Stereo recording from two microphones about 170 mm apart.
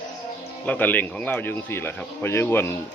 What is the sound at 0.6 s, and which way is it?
A man's voice, 10° left (ahead or behind).